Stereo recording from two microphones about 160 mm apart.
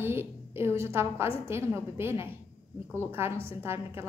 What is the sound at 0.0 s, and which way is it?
A woman's voice, 15° right (ahead or behind).